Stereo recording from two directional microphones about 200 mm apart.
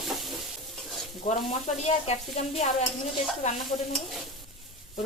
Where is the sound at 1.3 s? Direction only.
35° left (ahead or behind).